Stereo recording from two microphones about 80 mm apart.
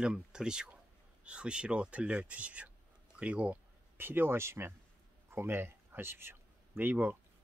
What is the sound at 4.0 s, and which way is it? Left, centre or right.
A man's voice, right.